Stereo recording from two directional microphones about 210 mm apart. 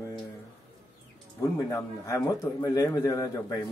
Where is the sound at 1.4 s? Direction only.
15° left (ahead or behind).